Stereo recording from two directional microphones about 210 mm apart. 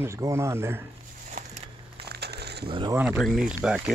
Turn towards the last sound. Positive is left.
turn(degrees=-5)  # may be behind; listen again after turning